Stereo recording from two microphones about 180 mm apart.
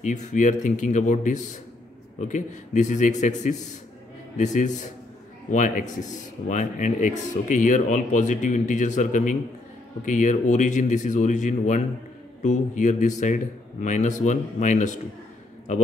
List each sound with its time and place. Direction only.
0.0 s speech: 45° left (ahead or behind)